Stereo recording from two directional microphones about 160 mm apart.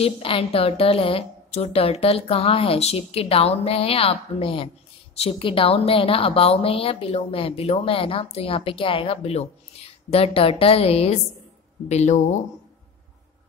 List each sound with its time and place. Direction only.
0.0 s a woman's voice: 35° left (ahead or behind)